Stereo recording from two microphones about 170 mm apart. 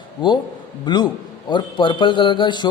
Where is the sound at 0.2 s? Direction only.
25° left (ahead or behind).